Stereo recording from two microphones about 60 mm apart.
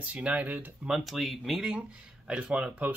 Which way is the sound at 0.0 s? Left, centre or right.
Right.